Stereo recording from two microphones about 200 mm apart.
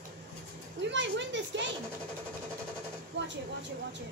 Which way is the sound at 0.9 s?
65° right (ahead or behind).